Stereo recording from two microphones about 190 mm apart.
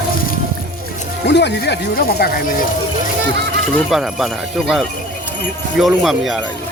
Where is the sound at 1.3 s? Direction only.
65° left (ahead or behind).